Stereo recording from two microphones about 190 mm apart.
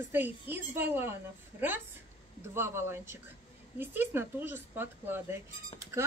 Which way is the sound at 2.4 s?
10° right (ahead or behind).